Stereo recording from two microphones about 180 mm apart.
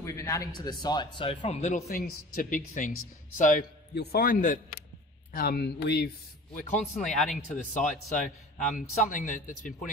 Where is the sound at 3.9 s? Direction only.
60° left (ahead or behind).